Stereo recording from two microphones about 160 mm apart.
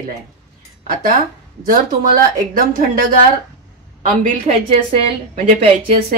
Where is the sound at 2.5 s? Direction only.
60° right (ahead or behind).